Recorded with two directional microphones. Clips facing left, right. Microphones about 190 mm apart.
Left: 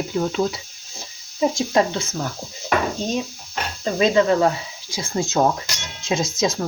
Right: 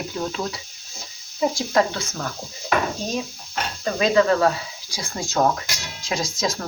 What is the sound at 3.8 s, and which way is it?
Speech, 20° left (ahead or behind).